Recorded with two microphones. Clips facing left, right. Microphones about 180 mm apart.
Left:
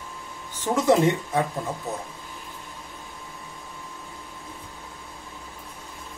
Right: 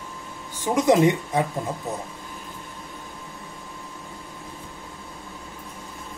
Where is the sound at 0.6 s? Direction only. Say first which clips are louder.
Right 2 dB; 15° right (ahead or behind).